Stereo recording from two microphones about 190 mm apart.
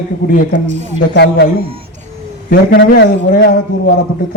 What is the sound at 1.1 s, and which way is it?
Speech, 65° left (ahead or behind).